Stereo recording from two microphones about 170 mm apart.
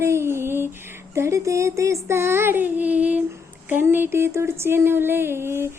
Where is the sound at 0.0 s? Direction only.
15° right (ahead or behind).